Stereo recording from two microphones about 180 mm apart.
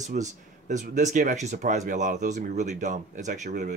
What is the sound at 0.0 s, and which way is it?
Speech, 40° right (ahead or behind).